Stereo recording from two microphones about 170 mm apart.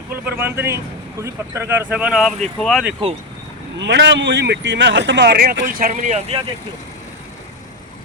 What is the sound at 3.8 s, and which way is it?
A man's voice, 90° right.